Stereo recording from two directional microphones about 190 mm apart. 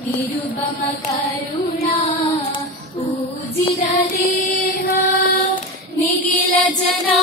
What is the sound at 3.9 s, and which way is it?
Music, 50° left (ahead or behind).